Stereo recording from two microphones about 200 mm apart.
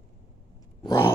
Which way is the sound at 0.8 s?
15° left (ahead or behind).